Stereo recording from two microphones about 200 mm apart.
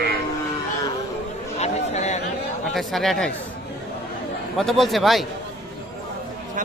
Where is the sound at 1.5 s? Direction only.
35° left (ahead or behind).